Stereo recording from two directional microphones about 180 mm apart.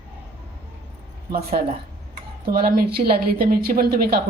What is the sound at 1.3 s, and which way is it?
A woman's voice, 55° right (ahead or behind).